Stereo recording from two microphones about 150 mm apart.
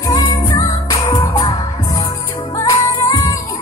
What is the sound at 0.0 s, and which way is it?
Music, 20° left (ahead or behind).